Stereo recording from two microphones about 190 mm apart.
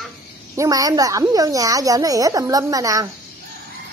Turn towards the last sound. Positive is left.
turn(degrees=-20)  # may be behind; listen again after turning